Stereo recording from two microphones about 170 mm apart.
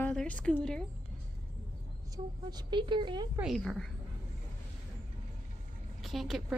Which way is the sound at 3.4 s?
Centre (ahead or behind).